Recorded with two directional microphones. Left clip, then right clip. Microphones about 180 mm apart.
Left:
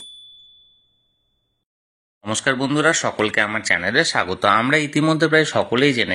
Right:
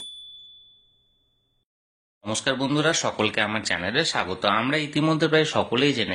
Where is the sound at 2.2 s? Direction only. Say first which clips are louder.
Left 5 dB; 20° left (ahead or behind).